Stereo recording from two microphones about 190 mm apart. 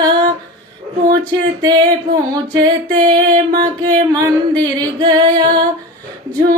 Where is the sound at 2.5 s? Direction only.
25° right (ahead or behind).